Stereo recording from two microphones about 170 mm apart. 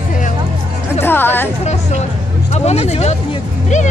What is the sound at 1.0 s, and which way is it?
Music, 15° left (ahead or behind).